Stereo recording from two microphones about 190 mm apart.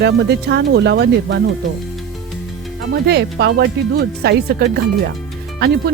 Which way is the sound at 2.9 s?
60° right (ahead or behind).